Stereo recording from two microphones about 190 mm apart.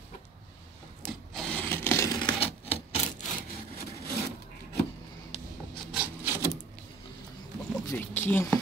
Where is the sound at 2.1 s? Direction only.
30° left (ahead or behind).